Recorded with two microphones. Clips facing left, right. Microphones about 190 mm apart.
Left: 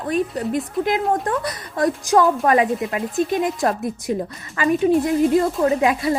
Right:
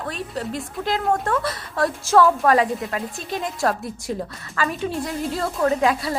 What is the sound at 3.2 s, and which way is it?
Speech, 55° left (ahead or behind).